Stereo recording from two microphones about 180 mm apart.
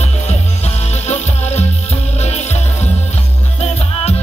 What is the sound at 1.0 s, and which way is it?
Music, 35° left (ahead or behind).